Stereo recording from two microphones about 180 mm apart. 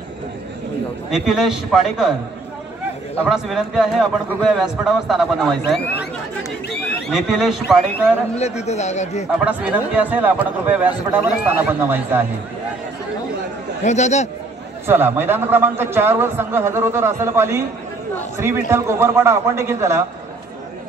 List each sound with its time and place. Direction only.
1.1 s a man's voice: centre (ahead or behind)
3.3 s a man's voice: centre (ahead or behind)
8.4 s speech: 35° left (ahead or behind)
9.4 s a man's voice: 5° right (ahead or behind)
13.8 s speech: 40° left (ahead or behind)
14.9 s a man's voice: 10° right (ahead or behind)